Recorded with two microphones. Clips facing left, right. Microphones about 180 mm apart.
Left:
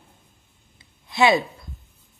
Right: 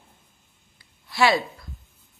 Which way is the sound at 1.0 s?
20° left (ahead or behind).